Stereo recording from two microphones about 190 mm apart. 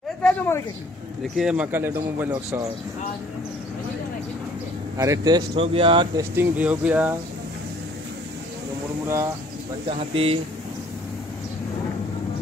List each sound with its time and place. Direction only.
0.2 s a sound: 5° left (ahead or behind)
1.2 s speech: centre (ahead or behind)
4.9 s speech: 15° right (ahead or behind)
6.3 s speech: 10° right (ahead or behind)
9.0 s speech: 15° right (ahead or behind)
9.8 s speech: 30° right (ahead or behind)